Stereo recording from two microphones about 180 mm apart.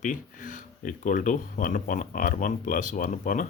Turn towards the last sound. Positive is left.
turn(degrees=45)  # may be behind; listen again after turning